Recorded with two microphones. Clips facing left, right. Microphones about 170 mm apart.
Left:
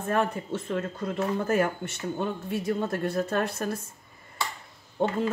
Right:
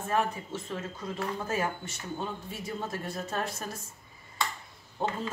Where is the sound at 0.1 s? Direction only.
55° left (ahead or behind).